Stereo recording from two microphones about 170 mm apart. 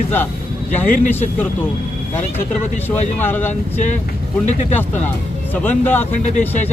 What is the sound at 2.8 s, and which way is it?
Speech, 10° left (ahead or behind).